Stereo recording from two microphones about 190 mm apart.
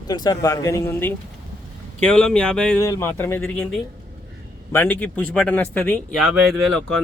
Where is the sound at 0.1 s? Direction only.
20° left (ahead or behind).